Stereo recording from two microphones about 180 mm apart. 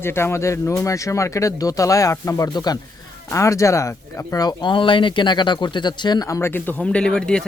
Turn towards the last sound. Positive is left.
turn(degrees=5)  # may be behind; listen again after turning